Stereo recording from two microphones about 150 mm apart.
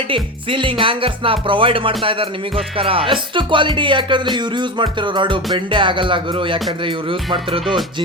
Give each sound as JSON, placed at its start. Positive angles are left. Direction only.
{"t": 0.1, "sound": "speech", "side_deg": -35}